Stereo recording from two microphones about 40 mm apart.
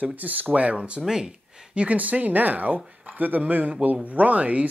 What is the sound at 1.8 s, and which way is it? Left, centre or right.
A man's voice, right.